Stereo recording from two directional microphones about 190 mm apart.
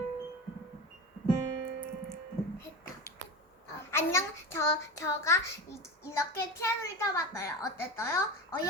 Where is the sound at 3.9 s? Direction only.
15° left (ahead or behind).